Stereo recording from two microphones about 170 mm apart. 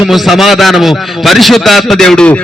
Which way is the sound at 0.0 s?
Centre (ahead or behind).